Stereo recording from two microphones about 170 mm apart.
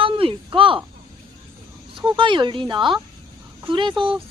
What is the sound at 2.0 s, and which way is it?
Speech, 30° right (ahead or behind).